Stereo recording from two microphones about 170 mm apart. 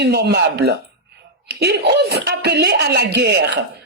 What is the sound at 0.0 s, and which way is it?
A woman's voice, 75° right (ahead or behind).